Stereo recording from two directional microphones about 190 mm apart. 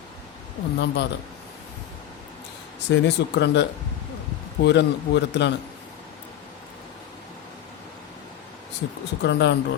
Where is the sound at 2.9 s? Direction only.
70° left (ahead or behind).